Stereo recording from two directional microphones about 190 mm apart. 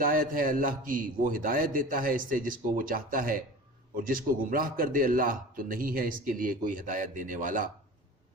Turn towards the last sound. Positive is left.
turn(degrees=-45)  # may be behind; listen again after turning